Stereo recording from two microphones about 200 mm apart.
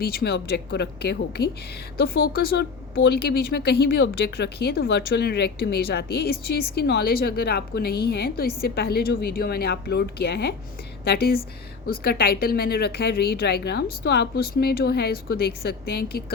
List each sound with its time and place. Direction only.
0.0 s a woman's voice: 50° left (ahead or behind)